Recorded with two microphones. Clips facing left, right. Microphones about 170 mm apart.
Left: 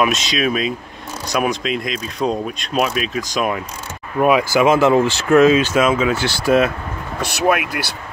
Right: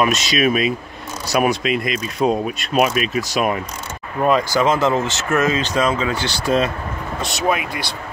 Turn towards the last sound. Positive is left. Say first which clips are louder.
# left 3 dB
turn(degrees=0)  # may be behind; listen again after turning